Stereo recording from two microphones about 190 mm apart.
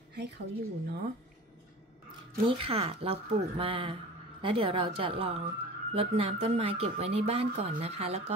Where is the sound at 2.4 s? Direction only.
30° right (ahead or behind).